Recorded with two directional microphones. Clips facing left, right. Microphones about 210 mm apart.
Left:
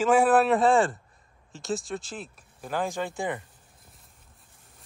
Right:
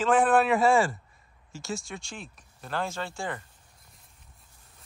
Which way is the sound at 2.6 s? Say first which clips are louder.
Left 3 dB; 15° left (ahead or behind).